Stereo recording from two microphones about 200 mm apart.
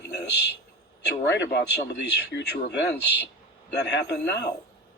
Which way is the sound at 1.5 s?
55° left (ahead or behind).